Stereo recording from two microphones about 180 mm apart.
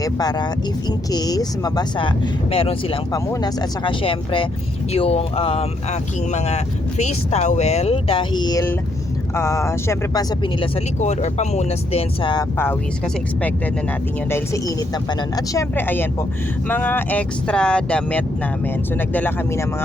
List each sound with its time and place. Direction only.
0.0 s speech: 20° left (ahead or behind)
11.0 s speech: 40° left (ahead or behind)
14.3 s speech: 15° left (ahead or behind)